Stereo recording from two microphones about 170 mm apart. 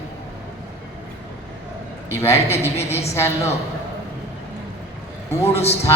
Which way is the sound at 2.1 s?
15° left (ahead or behind).